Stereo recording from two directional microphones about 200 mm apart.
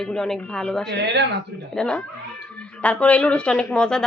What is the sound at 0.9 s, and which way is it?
Speech, 55° right (ahead or behind).